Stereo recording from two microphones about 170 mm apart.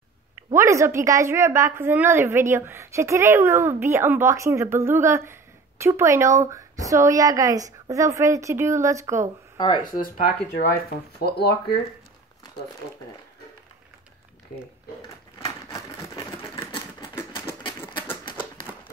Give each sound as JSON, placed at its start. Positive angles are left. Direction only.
{"t": 0.5, "sound": "a woman's voice", "side_deg": -15}
{"t": 9.9, "sound": "speech", "side_deg": 55}
{"t": 11.1, "sound": "speech", "side_deg": 70}
{"t": 15.3, "sound": "a sound", "side_deg": 20}
{"t": 17.6, "sound": "typewriter", "side_deg": 30}